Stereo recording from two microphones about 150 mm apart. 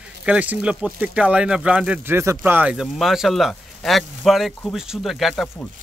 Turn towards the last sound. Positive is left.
turn(degrees=5)  # may be behind; listen again after turning